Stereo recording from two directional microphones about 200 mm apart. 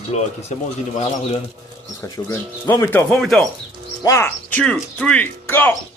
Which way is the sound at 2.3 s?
10° left (ahead or behind).